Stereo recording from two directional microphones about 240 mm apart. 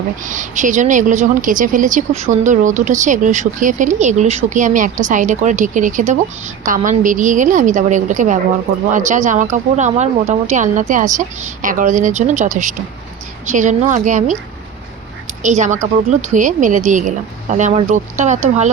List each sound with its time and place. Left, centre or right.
0.3 s a woman's voice: right
15.4 s a woman's voice: right